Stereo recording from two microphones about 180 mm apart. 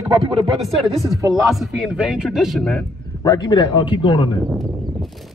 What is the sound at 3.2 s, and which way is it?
Speech, 25° left (ahead or behind).